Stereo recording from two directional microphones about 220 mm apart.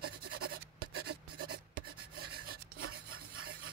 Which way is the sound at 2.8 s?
70° right (ahead or behind).